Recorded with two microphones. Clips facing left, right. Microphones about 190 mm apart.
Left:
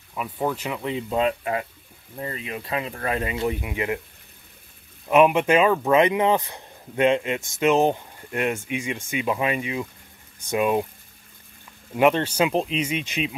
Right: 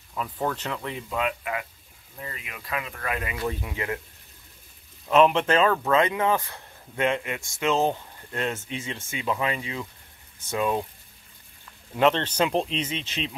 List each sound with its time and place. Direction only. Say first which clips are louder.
0.1 s speech: left 2 dB; 10° left (ahead or behind)
1.1 s speech: left 5 dB; 30° left (ahead or behind)
3.4 s speech: left 2 dB; 15° left (ahead or behind)
5.0 s speech: left 2 dB; 10° left (ahead or behind)
11.9 s speech: left 3 dB; 10° left (ahead or behind)